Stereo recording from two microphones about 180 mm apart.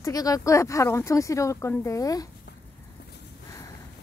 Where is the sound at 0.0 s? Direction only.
20° left (ahead or behind).